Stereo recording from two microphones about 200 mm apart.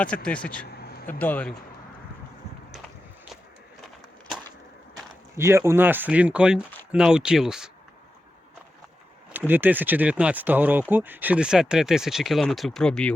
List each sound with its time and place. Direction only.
0.3 s speech: 5° left (ahead or behind)
0.7 s a sound: 50° left (ahead or behind)
1.0 s speech: 10° left (ahead or behind)
5.4 s speech: 15° right (ahead or behind)
9.3 s speech: 10° right (ahead or behind)